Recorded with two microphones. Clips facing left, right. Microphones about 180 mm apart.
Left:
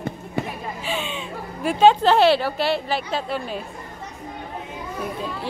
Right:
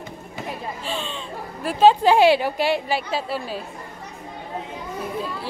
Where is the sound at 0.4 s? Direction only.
60° left (ahead or behind).